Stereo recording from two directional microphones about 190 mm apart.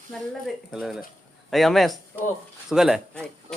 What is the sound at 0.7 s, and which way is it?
Speech, centre (ahead or behind).